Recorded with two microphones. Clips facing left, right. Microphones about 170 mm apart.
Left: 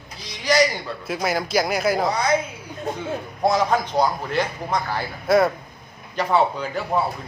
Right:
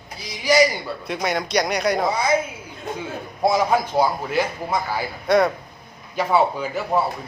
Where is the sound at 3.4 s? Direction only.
10° right (ahead or behind).